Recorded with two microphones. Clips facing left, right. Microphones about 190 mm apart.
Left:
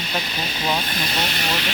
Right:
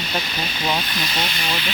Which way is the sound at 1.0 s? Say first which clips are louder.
Left 1 dB; 50° left (ahead or behind).